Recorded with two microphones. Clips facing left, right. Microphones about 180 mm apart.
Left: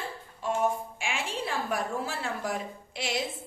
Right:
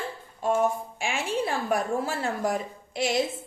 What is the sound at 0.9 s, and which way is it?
A woman's voice, 45° right (ahead or behind).